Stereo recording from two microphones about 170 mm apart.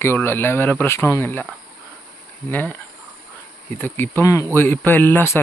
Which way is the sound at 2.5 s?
10° left (ahead or behind).